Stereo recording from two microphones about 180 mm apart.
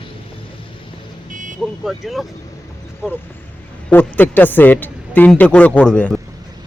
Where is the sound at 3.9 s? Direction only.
10° left (ahead or behind).